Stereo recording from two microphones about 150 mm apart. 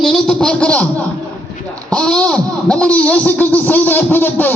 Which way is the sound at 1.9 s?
5° left (ahead or behind).